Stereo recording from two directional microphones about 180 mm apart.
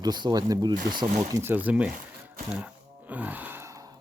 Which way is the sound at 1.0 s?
40° right (ahead or behind).